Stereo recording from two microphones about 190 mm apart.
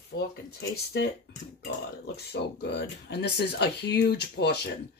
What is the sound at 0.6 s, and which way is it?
Speech, 60° left (ahead or behind).